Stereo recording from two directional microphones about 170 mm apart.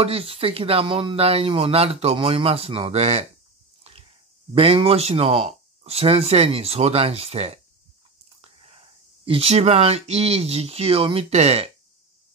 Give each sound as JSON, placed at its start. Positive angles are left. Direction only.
{"t": 0.0, "sound": "speech", "side_deg": -35}
{"t": 3.8, "sound": "a sound", "side_deg": -35}
{"t": 4.6, "sound": "speech", "side_deg": -35}